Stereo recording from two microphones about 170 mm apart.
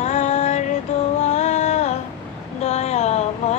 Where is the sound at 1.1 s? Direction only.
40° left (ahead or behind).